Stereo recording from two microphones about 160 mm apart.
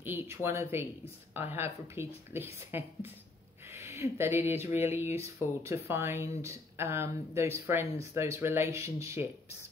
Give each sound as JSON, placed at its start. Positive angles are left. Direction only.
{"t": 0.0, "sound": "speech", "side_deg": -15}